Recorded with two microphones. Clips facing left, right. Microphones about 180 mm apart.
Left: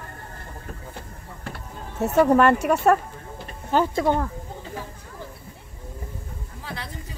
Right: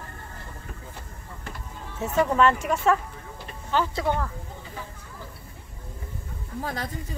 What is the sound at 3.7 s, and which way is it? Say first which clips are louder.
Speech: left 4 dB; 45° left (ahead or behind).